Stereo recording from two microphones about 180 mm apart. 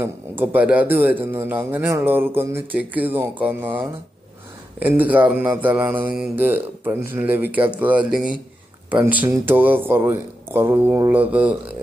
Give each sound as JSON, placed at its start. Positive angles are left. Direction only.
{"t": 0.0, "sound": "speech", "side_deg": -10}